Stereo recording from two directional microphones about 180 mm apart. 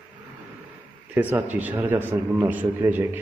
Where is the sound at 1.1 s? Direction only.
10° right (ahead or behind).